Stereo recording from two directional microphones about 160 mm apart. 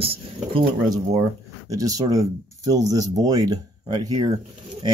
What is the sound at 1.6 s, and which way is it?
Speech, 20° right (ahead or behind).